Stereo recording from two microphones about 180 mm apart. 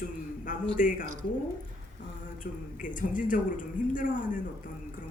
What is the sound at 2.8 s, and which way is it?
Speech, 45° left (ahead or behind).